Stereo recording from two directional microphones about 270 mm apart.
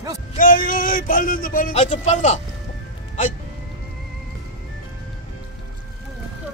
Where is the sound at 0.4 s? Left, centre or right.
Left.